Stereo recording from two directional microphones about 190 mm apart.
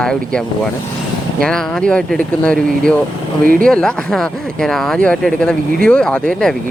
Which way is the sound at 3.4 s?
50° right (ahead or behind).